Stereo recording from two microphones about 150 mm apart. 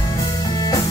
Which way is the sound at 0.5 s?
25° left (ahead or behind).